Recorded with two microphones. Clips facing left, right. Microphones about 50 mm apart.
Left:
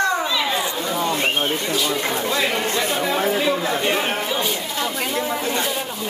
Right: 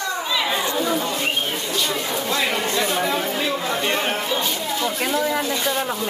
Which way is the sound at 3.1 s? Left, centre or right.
Centre.